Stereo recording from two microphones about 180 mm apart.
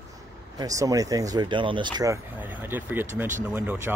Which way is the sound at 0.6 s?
20° right (ahead or behind).